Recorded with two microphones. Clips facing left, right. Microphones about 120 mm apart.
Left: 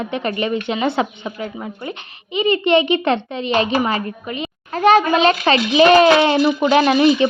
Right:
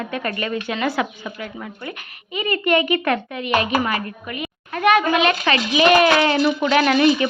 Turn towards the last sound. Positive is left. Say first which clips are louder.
# left 3 dB
turn(degrees=25)  # may be behind; listen again after turning